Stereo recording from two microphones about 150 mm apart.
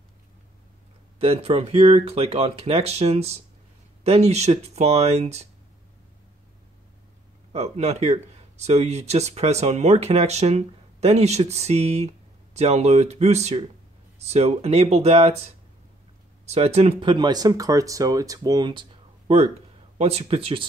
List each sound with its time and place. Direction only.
1.2 s speech: 40° right (ahead or behind)
7.5 s speech: 45° right (ahead or behind)
16.4 s speech: 45° right (ahead or behind)
19.2 s speech: 45° right (ahead or behind)